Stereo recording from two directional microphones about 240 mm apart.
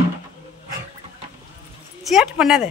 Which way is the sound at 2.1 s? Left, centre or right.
Centre.